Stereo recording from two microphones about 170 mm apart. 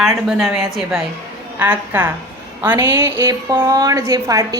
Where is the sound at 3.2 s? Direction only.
25° right (ahead or behind).